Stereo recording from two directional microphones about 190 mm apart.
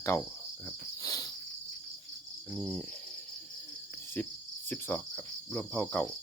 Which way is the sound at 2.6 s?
10° left (ahead or behind).